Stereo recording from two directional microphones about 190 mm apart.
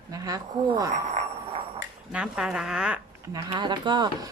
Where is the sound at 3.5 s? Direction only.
25° right (ahead or behind).